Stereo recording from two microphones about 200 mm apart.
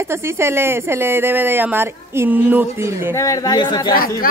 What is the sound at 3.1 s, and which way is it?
Speech, 15° left (ahead or behind).